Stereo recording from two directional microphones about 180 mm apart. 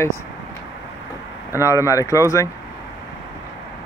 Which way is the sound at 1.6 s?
15° left (ahead or behind).